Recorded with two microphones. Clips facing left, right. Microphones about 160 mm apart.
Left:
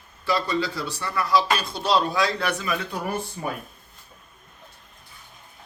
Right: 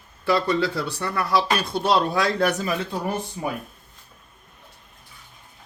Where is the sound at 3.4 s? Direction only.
10° right (ahead or behind).